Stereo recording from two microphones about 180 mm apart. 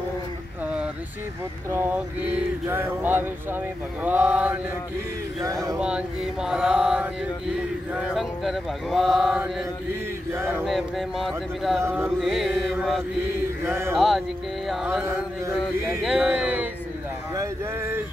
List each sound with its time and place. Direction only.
2.3 s music: 10° right (ahead or behind)
5.4 s speech: 20° right (ahead or behind)
5.8 s speech: 5° right (ahead or behind)
10.3 s music: 10° right (ahead or behind)
10.6 s speech: centre (ahead or behind)
11.8 s music: 15° right (ahead or behind)
12.2 s speech: centre (ahead or behind)
13.7 s music: 15° right (ahead or behind)
13.9 s speech: centre (ahead or behind)
15.0 s music: 15° right (ahead or behind)
16.0 s speech: 5° right (ahead or behind)
17.4 s music: 15° right (ahead or behind)